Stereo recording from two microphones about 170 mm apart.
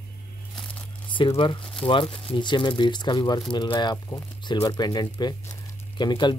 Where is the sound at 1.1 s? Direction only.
30° left (ahead or behind).